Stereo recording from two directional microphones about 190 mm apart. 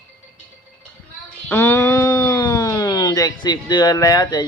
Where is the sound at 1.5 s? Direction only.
15° left (ahead or behind).